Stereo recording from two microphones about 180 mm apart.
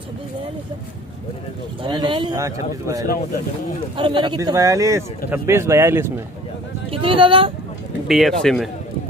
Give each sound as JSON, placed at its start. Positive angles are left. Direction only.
{"t": 1.8, "sound": "a man's voice", "side_deg": -25}
{"t": 6.9, "sound": "speech", "side_deg": -30}
{"t": 8.1, "sound": "speech", "side_deg": 0}